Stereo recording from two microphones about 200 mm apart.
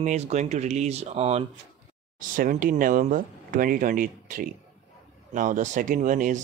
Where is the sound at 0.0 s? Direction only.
35° right (ahead or behind).